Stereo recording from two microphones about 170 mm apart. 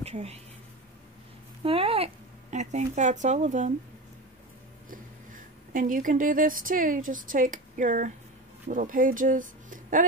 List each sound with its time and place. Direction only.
0.0 s a woman's voice: 40° right (ahead or behind)
1.6 s a sound: 35° right (ahead or behind)
2.5 s speech: 45° right (ahead or behind)
4.8 s speech: 55° right (ahead or behind)